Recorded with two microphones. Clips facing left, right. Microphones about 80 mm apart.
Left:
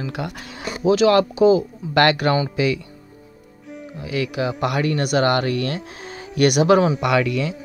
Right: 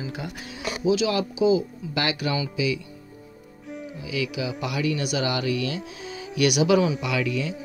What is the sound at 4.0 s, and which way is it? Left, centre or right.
Speech, left.